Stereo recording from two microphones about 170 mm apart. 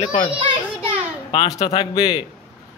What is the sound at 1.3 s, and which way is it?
Speech, 30° left (ahead or behind).